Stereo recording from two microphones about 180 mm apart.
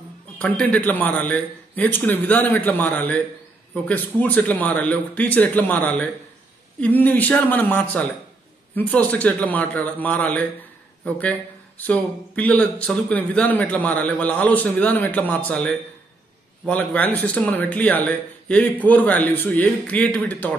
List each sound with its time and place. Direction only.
0.4 s speech: 10° left (ahead or behind)